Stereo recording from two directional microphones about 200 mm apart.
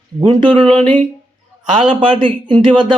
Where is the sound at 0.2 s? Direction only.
25° right (ahead or behind).